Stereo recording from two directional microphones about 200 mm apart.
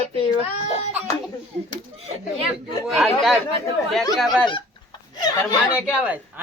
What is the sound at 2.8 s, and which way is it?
Speech, centre (ahead or behind).